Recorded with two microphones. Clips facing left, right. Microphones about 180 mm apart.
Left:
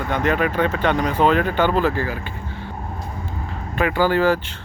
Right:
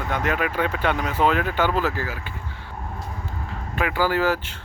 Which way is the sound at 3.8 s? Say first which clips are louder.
Left 4 dB; 5° right (ahead or behind).